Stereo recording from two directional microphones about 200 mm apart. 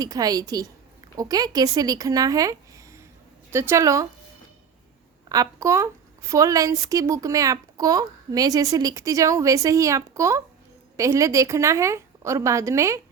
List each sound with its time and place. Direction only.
0.0 s a woman's voice: 20° right (ahead or behind)
5.3 s a woman's voice: 15° right (ahead or behind)